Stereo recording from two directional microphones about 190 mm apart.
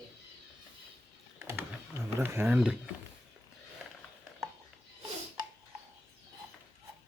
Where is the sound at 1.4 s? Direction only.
10° right (ahead or behind).